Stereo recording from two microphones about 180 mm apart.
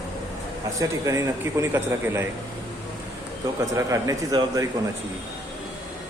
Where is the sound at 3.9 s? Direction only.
20° right (ahead or behind).